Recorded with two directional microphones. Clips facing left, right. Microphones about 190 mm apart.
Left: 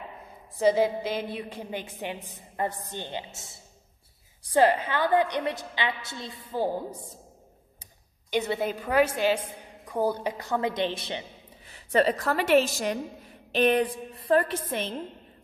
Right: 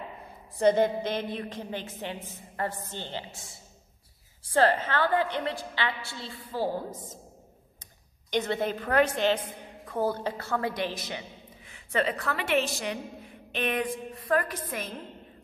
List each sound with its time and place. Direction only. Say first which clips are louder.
0.6 s a woman's voice: even; 5° left (ahead or behind)
4.5 s a woman's voice: left 2 dB; 15° left (ahead or behind)
8.3 s a woman's voice: left 1 dB; 10° left (ahead or behind); by 15.0 s 25° left (ahead or behind)